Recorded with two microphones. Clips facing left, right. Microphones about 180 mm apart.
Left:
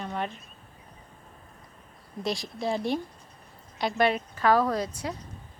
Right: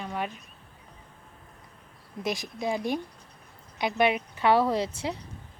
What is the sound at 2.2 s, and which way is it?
Speech, 20° right (ahead or behind).